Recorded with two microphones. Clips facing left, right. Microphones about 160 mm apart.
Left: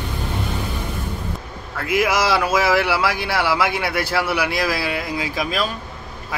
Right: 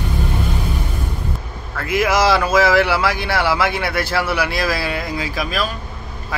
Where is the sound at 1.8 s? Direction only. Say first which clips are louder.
Right 3 dB; 10° left (ahead or behind).